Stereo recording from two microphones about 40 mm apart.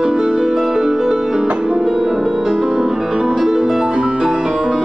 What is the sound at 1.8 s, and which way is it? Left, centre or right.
Music, centre.